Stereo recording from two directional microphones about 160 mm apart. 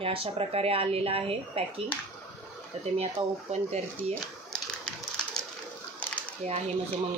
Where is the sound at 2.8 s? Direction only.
40° right (ahead or behind).